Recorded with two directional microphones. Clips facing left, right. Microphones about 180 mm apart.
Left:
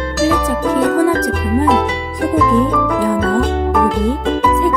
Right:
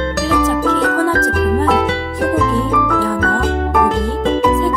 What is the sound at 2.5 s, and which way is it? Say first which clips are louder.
Music: left 2 dB; 15° left (ahead or behind).